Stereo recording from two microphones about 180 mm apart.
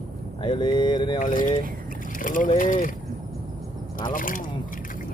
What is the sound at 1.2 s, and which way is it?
Speech, 50° left (ahead or behind).